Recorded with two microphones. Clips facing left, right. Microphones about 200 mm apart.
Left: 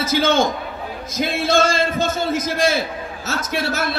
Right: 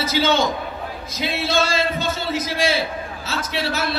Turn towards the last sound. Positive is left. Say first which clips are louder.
# left 2 dB
turn(degrees=45)  # may be behind; listen again after turning